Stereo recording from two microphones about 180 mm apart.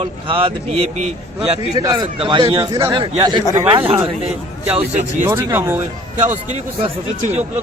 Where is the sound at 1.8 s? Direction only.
25° right (ahead or behind).